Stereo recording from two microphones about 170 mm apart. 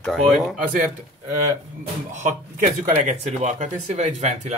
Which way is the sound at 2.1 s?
45° right (ahead or behind).